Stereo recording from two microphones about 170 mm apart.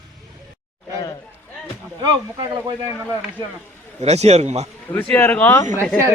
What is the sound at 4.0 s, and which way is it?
Speech, 40° right (ahead or behind).